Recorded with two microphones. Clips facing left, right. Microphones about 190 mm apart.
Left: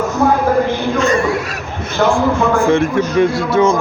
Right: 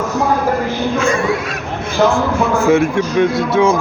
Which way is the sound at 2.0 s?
10° right (ahead or behind).